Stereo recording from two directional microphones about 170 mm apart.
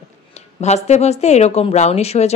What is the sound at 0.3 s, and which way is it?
Speech, 40° left (ahead or behind).